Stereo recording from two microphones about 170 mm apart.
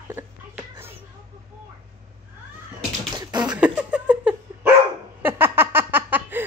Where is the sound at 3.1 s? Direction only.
25° right (ahead or behind).